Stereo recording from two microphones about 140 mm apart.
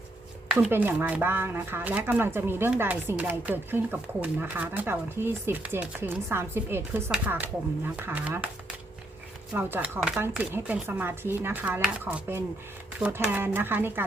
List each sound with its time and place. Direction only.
0.5 s speech: 10° right (ahead or behind)
9.5 s speech: 15° right (ahead or behind)